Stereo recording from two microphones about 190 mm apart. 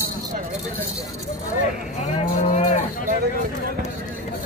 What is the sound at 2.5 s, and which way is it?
Cattle, 35° left (ahead or behind).